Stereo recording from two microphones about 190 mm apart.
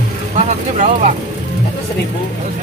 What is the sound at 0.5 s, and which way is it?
Speech, 40° right (ahead or behind).